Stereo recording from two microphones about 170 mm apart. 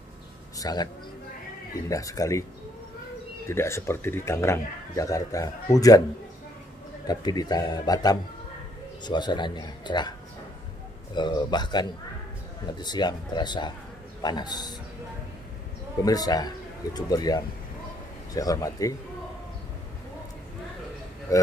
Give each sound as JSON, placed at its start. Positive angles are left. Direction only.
{"t": 0.6, "sound": "a man's voice", "side_deg": 20}
{"t": 1.9, "sound": "speech", "side_deg": 20}
{"t": 3.4, "sound": "speech", "side_deg": 15}
{"t": 7.1, "sound": "speech", "side_deg": 25}
{"t": 11.1, "sound": "speech", "side_deg": 25}
{"t": 16.0, "sound": "speech", "side_deg": 20}
{"t": 21.3, "sound": "speech", "side_deg": 20}